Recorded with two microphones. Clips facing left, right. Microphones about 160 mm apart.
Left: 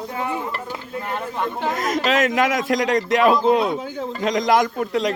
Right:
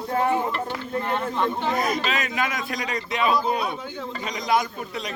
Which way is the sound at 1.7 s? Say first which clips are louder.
Left 5 dB; 90° left.